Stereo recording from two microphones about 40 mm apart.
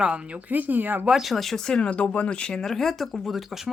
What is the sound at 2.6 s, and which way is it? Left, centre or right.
Speech, centre.